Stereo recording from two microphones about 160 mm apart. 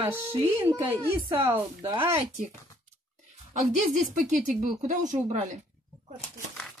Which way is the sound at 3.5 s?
50° right (ahead or behind).